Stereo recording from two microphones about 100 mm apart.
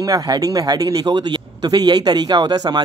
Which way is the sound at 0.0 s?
40° right (ahead or behind).